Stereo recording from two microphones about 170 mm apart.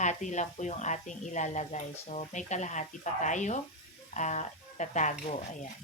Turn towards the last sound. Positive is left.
turn(degrees=45)  # may be behind; listen again after turning